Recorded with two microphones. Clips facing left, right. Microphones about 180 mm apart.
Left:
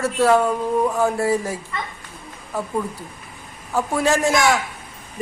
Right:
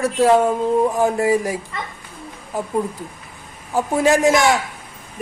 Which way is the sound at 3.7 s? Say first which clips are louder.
Right 3 dB; 15° right (ahead or behind).